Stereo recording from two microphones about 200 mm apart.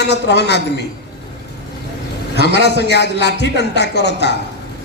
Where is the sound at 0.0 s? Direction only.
60° left (ahead or behind).